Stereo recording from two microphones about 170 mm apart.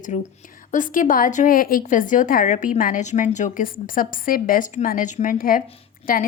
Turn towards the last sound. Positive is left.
turn(degrees=55)  # may be behind; listen again after turning